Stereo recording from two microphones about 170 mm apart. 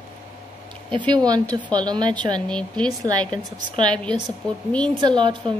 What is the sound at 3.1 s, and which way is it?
Speech, 25° right (ahead or behind).